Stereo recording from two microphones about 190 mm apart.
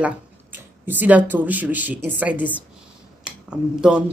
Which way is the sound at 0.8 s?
10° right (ahead or behind).